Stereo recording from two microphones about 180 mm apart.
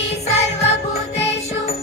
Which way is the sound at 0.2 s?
35° left (ahead or behind).